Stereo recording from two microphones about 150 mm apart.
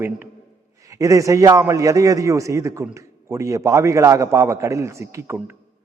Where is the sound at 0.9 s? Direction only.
20° right (ahead or behind).